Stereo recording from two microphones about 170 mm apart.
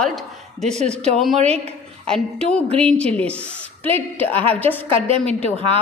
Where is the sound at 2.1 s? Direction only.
5° left (ahead or behind).